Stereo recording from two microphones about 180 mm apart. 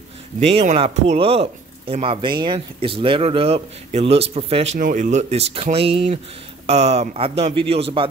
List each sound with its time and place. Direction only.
0.4 s speech: 35° right (ahead or behind)
4.7 s speech: 50° right (ahead or behind); by 8.1 s 30° right (ahead or behind)